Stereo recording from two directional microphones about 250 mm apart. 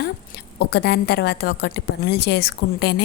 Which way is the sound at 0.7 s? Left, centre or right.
Left.